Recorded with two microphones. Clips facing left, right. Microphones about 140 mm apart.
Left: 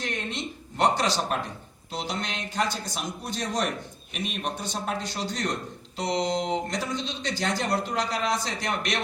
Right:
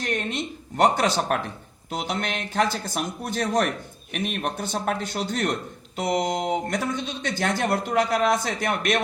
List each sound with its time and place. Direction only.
0.1 s a man's voice: 55° right (ahead or behind)